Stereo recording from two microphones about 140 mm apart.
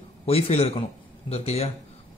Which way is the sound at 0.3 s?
45° left (ahead or behind).